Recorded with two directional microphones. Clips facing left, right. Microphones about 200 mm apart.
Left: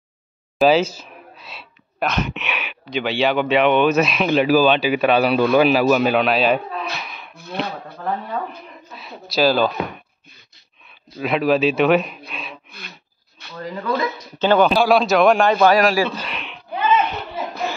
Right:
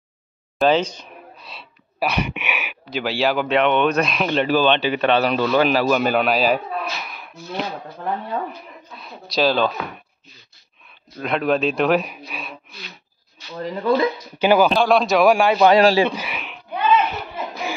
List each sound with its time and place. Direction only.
0.6 s gasp: 5° left (ahead or behind)
2.0 s speech: 10° right (ahead or behind)
7.0 s a sound: centre (ahead or behind)
8.9 s speech: 5° left (ahead or behind)
11.1 s speech: centre (ahead or behind)
13.6 s speech: 25° right (ahead or behind)
14.4 s a man's voice: 10° right (ahead or behind)
14.7 s speech: 5° left (ahead or behind)
15.7 s speech: 25° right (ahead or behind)
16.1 s speech: 10° right (ahead or behind)
17.1 s a sound: 10° right (ahead or behind)